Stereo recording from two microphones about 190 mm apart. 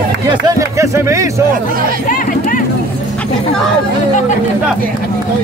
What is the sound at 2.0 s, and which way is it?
Speech, 45° left (ahead or behind).